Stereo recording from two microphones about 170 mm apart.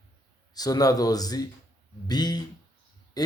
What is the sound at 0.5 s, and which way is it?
Speech, 20° left (ahead or behind).